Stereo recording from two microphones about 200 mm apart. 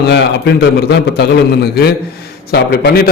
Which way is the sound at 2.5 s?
50° left (ahead or behind).